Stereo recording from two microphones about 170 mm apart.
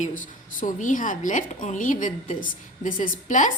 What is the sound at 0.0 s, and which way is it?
A woman's voice, 50° left (ahead or behind).